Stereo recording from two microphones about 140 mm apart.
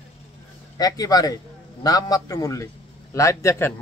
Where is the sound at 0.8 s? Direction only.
25° left (ahead or behind).